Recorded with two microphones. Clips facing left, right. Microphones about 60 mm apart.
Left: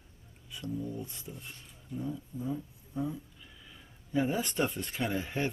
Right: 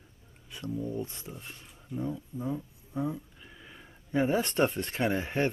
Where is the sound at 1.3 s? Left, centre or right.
Centre.